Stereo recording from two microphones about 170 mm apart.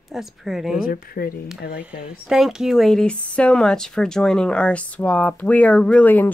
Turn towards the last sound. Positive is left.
turn(degrees=10)  # may be behind; listen again after turning